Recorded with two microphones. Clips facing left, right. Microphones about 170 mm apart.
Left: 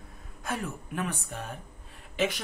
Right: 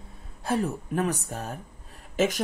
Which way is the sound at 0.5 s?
35° right (ahead or behind).